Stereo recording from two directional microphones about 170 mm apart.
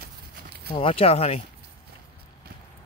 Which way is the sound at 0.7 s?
35° left (ahead or behind).